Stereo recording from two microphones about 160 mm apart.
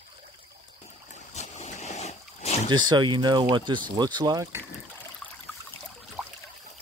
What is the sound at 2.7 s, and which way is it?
Speech, 25° right (ahead or behind).